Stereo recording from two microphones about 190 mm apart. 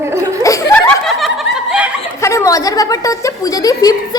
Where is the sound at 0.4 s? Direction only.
15° left (ahead or behind); by 1.9 s 5° right (ahead or behind).